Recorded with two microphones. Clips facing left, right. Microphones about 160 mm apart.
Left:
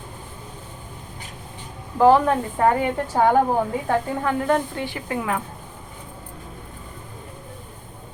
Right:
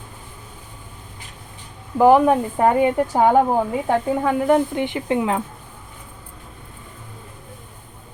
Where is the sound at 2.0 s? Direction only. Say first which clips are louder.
Right 2 dB; 15° right (ahead or behind).